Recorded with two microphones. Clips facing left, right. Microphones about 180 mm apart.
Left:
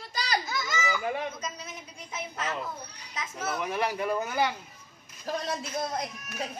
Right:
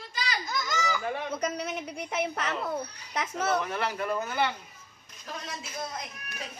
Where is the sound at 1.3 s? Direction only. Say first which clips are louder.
Right 8 dB; 70° right (ahead or behind).